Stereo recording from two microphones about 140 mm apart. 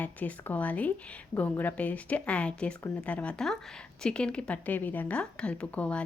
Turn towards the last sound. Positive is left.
turn(degrees=10)  # may be behind; listen again after turning